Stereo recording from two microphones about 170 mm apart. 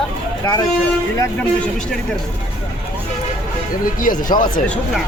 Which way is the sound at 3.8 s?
55° left (ahead or behind).